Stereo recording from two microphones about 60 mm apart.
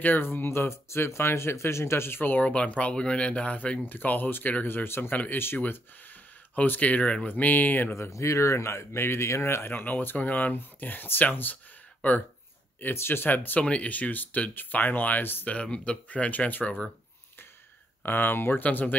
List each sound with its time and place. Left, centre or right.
0.0 s speech: left
2.4 s speech: left
3.8 s speech: left
5.1 s speech: left
7.9 s speech: left
9.7 s speech: left
12.9 s speech: left
13.6 s speech: left
15.4 s speech: centre
18.0 s speech: left
18.6 s speech: left